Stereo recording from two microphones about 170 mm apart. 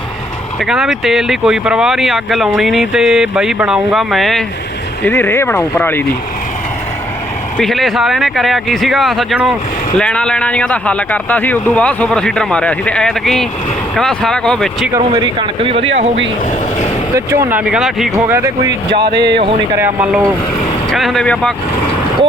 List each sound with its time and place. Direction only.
0.6 s speech: centre (ahead or behind)
5.0 s speech: 15° left (ahead or behind)
7.6 s speech: centre (ahead or behind)
15.1 s speech: 30° right (ahead or behind)
17.2 s speech: 15° right (ahead or behind)
18.3 s speech: 15° right (ahead or behind)
19.1 s speech: 85° right
19.7 s speech: 10° right (ahead or behind)